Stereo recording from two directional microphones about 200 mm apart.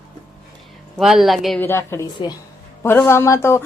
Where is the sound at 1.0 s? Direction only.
Centre (ahead or behind).